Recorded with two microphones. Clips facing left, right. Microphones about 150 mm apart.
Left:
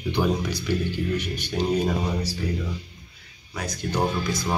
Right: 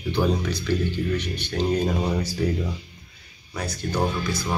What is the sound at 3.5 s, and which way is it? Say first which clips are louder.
Speech: even; 15° left (ahead or behind).